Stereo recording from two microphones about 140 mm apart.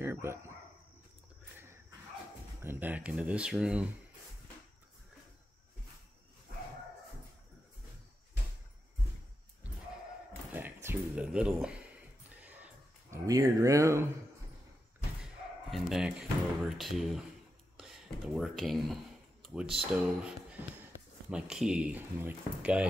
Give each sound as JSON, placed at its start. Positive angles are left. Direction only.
{"t": 0.0, "sound": "speech", "side_deg": -15}
{"t": 2.6, "sound": "speech", "side_deg": -15}
{"t": 10.5, "sound": "speech", "side_deg": -15}
{"t": 13.1, "sound": "speech", "side_deg": -25}
{"t": 15.7, "sound": "speech", "side_deg": 0}
{"t": 19.4, "sound": "a sound", "side_deg": -5}
{"t": 19.9, "sound": "speech", "side_deg": -5}